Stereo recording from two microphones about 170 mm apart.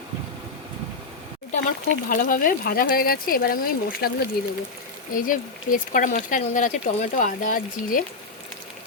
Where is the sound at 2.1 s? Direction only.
50° left (ahead or behind).